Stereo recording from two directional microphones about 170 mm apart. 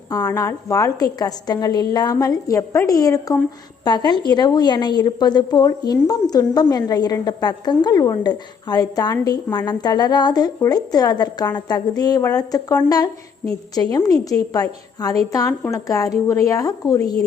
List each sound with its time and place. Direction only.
0.1 s a woman's voice: 20° left (ahead or behind)